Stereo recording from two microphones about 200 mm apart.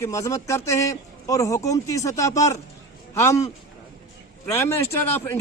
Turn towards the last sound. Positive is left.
turn(degrees=10)  # may be behind; listen again after turning